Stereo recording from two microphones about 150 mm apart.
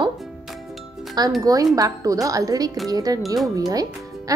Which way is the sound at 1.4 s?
25° right (ahead or behind).